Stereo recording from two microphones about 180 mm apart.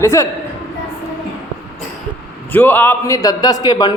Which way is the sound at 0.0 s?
15° left (ahead or behind).